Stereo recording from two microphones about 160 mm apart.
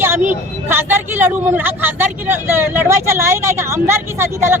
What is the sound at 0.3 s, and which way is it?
Speech, 15° right (ahead or behind).